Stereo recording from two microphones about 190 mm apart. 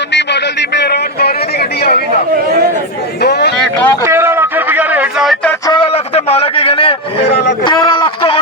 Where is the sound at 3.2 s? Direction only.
60° left (ahead or behind).